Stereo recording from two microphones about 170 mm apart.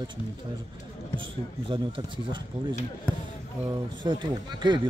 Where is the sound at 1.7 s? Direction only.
30° right (ahead or behind).